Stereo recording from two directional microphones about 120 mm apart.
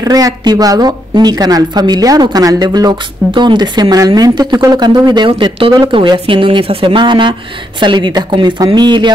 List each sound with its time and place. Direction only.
0.0 s speech: 30° right (ahead or behind)